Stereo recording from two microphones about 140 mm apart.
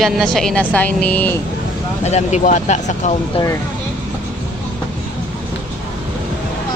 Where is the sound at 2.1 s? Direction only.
55° left (ahead or behind).